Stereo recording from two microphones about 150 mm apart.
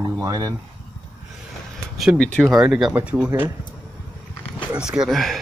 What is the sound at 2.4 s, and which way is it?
Speech, 5° right (ahead or behind).